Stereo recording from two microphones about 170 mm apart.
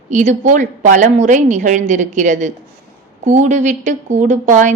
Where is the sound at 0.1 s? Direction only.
45° right (ahead or behind).